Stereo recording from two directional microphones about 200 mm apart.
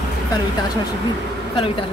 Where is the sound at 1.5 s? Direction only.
25° left (ahead or behind).